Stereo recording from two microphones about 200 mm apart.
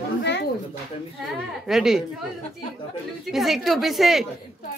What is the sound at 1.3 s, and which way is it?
Speech, centre (ahead or behind).